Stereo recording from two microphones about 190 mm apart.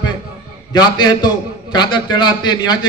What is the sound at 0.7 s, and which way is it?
A man's voice, 20° left (ahead or behind).